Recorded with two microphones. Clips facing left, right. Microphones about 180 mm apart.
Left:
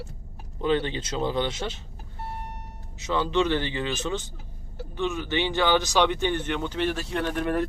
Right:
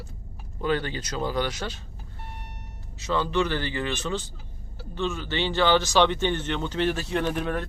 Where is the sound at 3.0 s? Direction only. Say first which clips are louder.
Left 1 dB; 20° left (ahead or behind).